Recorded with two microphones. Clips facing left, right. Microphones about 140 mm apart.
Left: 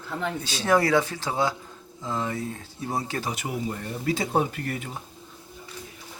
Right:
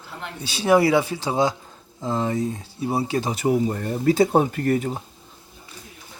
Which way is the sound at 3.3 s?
35° right (ahead or behind).